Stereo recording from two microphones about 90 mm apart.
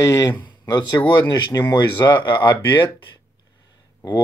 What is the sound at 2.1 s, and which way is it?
Speech, 25° left (ahead or behind).